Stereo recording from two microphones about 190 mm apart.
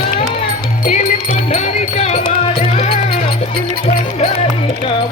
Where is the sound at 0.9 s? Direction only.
35° left (ahead or behind).